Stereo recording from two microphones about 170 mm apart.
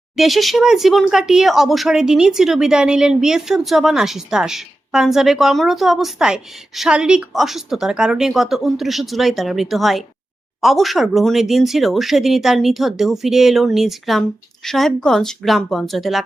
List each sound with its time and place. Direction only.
0.2 s speech: centre (ahead or behind)